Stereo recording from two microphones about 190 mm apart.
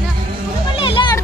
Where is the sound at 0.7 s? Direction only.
25° left (ahead or behind).